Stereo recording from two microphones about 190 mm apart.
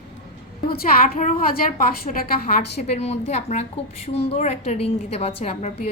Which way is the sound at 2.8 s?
35° left (ahead or behind).